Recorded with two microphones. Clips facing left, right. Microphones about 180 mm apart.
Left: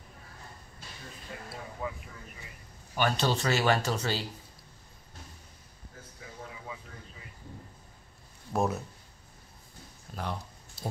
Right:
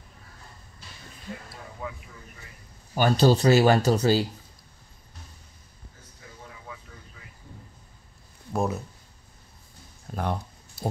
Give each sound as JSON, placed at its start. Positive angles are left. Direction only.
{"t": 1.8, "sound": "vehicle", "side_deg": 0}
{"t": 2.9, "sound": "speech", "side_deg": -35}
{"t": 8.5, "sound": "speech", "side_deg": 0}
{"t": 10.1, "sound": "a sound", "side_deg": -50}